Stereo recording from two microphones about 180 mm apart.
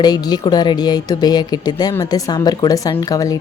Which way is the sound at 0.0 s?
20° left (ahead or behind).